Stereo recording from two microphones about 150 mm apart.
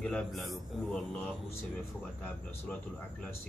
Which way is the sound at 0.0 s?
5° left (ahead or behind).